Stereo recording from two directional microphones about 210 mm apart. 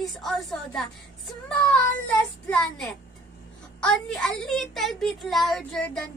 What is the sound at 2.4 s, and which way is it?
Speech, 5° left (ahead or behind).